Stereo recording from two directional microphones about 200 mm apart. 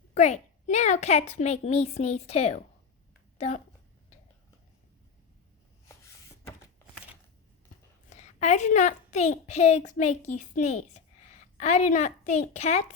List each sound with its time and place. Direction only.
0.1 s a woman's voice: 35° left (ahead or behind)
8.1 s a woman's voice: 35° left (ahead or behind)